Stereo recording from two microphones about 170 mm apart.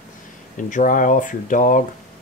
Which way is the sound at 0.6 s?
50° left (ahead or behind).